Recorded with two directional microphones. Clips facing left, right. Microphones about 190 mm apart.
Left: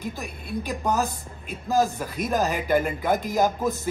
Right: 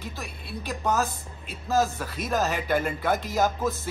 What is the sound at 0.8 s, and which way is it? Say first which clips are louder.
Speech: right 1 dB; 15° left (ahead or behind).